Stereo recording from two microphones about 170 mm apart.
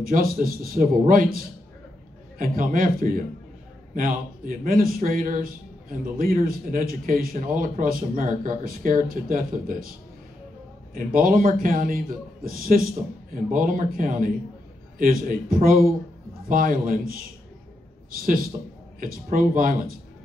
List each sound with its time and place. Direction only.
0.0 s a man's voice: 55° right (ahead or behind)
11.1 s a man's voice: 55° right (ahead or behind)
18.1 s a man's voice: 55° right (ahead or behind)